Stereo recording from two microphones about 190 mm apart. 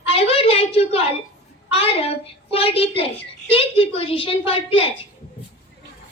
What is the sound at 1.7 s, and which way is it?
A woman's voice, 30° left (ahead or behind).